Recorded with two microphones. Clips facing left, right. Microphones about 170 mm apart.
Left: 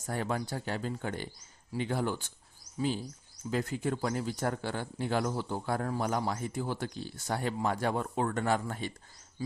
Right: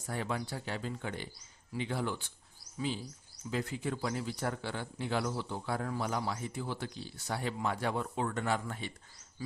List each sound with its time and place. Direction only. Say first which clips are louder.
0.0 s speech: left 3 dB; 45° left (ahead or behind)